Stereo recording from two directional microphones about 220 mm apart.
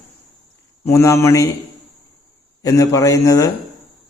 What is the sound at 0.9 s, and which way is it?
Speech, 15° left (ahead or behind).